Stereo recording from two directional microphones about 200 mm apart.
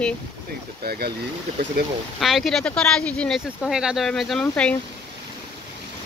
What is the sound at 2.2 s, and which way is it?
Speech, centre (ahead or behind).